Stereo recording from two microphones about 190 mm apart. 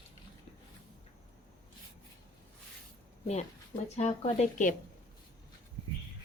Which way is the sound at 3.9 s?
35° left (ahead or behind).